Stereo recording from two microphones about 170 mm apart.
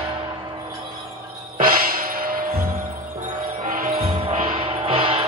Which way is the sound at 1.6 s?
55° right (ahead or behind).